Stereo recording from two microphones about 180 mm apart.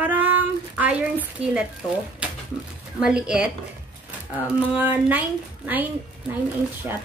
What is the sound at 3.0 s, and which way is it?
Speech, 5° right (ahead or behind).